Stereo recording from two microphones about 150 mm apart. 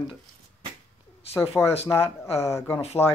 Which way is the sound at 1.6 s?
5° left (ahead or behind).